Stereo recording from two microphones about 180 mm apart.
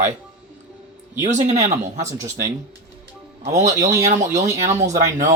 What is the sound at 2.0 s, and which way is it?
Speech, 15° right (ahead or behind).